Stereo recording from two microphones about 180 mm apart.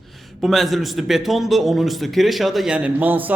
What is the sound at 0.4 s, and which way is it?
A man's voice, centre (ahead or behind).